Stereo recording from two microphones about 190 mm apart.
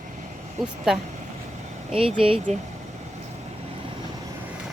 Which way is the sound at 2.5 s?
35° right (ahead or behind).